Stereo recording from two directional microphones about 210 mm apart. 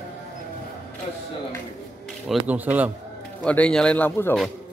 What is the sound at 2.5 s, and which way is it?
Speech, 10° right (ahead or behind).